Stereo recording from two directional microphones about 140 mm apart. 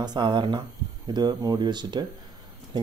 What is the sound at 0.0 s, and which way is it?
Speech, 30° right (ahead or behind).